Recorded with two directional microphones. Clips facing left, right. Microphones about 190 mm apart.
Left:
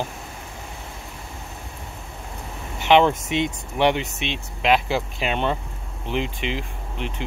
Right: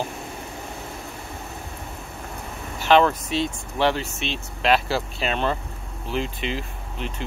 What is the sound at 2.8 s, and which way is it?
Speech, 20° left (ahead or behind).